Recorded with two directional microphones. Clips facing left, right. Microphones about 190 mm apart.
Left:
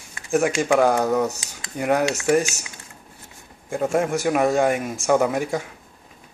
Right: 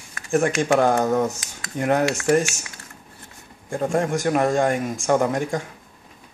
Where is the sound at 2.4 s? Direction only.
20° left (ahead or behind).